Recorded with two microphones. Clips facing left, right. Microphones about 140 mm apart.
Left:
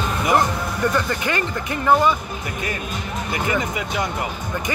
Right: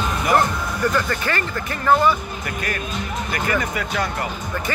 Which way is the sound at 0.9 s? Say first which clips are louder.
Even; 15° left (ahead or behind).